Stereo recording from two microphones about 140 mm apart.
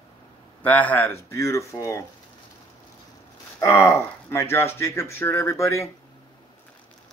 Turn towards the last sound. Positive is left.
turn(degrees=20)  # may be behind; listen again after turning